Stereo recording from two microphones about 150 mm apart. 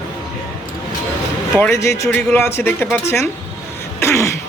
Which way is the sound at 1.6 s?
20° left (ahead or behind).